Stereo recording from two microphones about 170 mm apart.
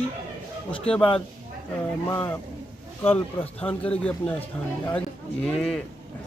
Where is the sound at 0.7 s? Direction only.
5° left (ahead or behind).